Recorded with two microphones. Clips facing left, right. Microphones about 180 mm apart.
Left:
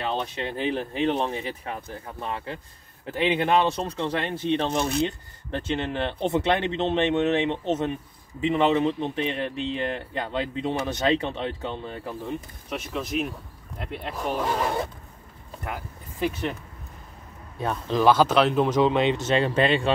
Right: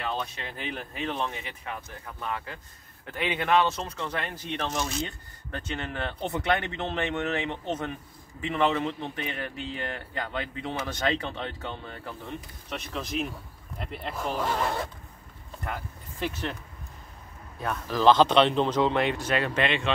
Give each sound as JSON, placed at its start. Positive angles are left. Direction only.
{"t": 0.0, "sound": "speech", "side_deg": 30}
{"t": 12.6, "sound": "speech", "side_deg": 5}
{"t": 17.6, "sound": "speech", "side_deg": 25}
{"t": 18.0, "sound": "speech", "side_deg": 5}